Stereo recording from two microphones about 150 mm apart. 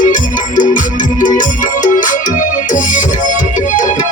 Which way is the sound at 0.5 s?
60° left (ahead or behind).